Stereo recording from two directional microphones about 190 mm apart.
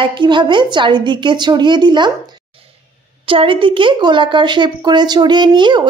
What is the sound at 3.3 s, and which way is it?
A woman's voice, 25° right (ahead or behind).